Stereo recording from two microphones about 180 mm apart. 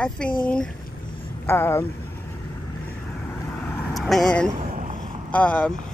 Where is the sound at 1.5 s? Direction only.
15° left (ahead or behind).